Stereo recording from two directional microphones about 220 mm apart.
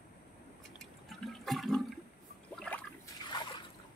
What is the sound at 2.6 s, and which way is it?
Trickle, 5° left (ahead or behind).